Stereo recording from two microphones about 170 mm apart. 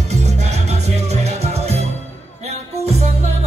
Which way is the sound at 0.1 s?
40° right (ahead or behind).